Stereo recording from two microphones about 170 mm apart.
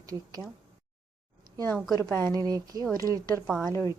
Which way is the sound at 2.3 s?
20° right (ahead or behind).